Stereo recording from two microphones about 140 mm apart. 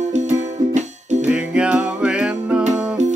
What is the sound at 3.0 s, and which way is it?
Music, 55° right (ahead or behind).